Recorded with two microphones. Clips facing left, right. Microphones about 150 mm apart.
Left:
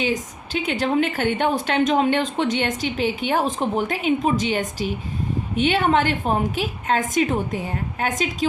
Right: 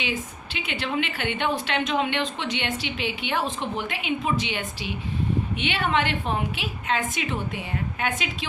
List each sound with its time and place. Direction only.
0.0 s a woman's voice: 40° left (ahead or behind)